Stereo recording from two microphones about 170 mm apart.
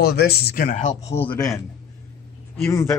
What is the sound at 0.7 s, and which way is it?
Speech, 45° left (ahead or behind).